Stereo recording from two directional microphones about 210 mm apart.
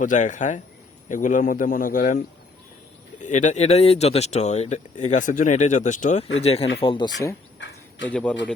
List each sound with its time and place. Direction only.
0.0 s speech: 35° left (ahead or behind)
3.2 s speech: 35° left (ahead or behind); by 7.3 s 20° left (ahead or behind)
8.0 s a man's voice: 5° left (ahead or behind)